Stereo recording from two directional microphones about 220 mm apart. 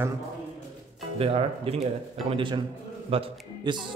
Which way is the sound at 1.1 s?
25° right (ahead or behind).